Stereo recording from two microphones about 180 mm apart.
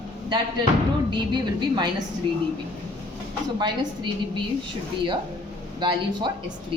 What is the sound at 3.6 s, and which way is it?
Speech, 25° right (ahead or behind).